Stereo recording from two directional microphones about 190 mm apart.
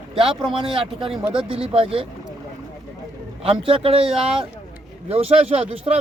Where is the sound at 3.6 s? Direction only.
30° right (ahead or behind).